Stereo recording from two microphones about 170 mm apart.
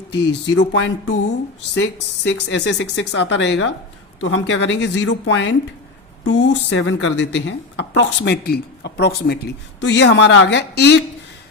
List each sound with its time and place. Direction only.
0.1 s speech: 85° left